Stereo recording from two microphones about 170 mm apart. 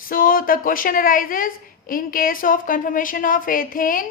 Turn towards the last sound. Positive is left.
turn(degrees=55)  # may be behind; listen again after turning